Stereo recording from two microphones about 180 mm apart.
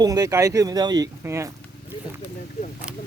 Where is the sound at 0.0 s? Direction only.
20° right (ahead or behind).